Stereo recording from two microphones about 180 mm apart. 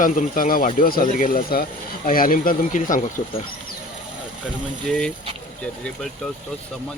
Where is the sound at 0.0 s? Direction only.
45° left (ahead or behind).